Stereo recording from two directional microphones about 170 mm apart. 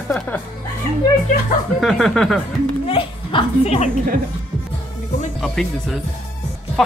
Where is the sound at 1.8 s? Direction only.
Centre (ahead or behind).